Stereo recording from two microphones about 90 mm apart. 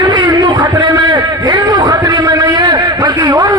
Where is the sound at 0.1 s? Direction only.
50° right (ahead or behind).